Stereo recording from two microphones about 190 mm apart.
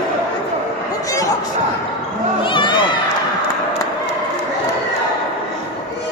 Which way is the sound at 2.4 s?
25° left (ahead or behind).